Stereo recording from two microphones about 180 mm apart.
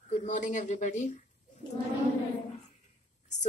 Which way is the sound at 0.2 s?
45° left (ahead or behind).